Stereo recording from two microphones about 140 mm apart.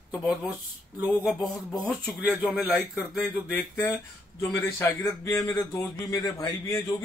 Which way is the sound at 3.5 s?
15° left (ahead or behind).